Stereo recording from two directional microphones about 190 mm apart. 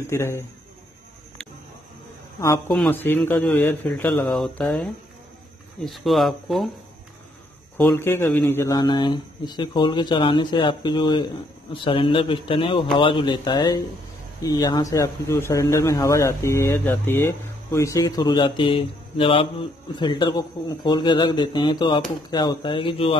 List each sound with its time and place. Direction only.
0.0 s a man's voice: 15° left (ahead or behind)
2.7 s a man's voice: 5° left (ahead or behind)
7.7 s a man's voice: 15° left (ahead or behind); by 23.1 s 30° left (ahead or behind)